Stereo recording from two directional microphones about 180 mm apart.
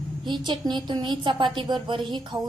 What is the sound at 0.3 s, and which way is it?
A woman's voice, 25° right (ahead or behind).